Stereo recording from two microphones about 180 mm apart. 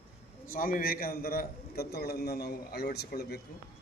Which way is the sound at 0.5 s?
50° left (ahead or behind).